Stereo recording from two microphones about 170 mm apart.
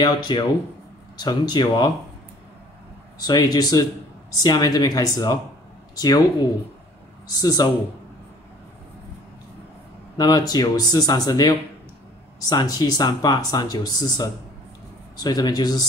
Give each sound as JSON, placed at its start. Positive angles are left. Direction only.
{"t": 0.0, "sound": "speech", "side_deg": 25}
{"t": 3.2, "sound": "speech", "side_deg": 25}
{"t": 7.3, "sound": "speech", "side_deg": 25}
{"t": 10.1, "sound": "speech", "side_deg": 25}